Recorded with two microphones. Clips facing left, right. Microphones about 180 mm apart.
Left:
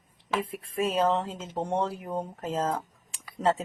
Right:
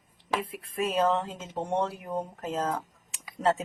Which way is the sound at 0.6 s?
30° left (ahead or behind).